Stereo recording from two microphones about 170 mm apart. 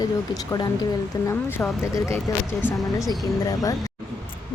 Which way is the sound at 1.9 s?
15° left (ahead or behind).